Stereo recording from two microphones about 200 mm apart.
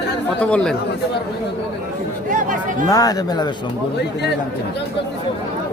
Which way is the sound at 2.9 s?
20° left (ahead or behind).